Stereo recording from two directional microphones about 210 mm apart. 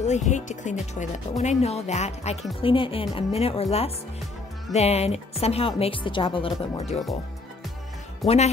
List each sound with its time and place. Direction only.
0.0 s speech: 35° left (ahead or behind)
4.7 s speech: 30° left (ahead or behind)
8.2 s speech: centre (ahead or behind)